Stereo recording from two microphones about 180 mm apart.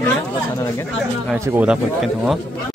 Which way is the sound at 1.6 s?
5° right (ahead or behind).